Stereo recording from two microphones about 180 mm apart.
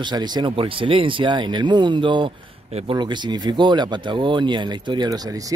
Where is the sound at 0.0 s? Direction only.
25° right (ahead or behind).